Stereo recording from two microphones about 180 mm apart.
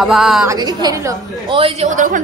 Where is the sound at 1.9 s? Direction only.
45° right (ahead or behind).